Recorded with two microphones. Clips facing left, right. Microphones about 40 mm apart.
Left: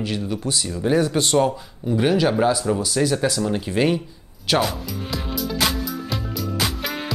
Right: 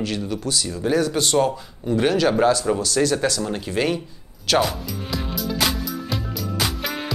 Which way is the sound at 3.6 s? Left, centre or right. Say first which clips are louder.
Left 2 dB; centre.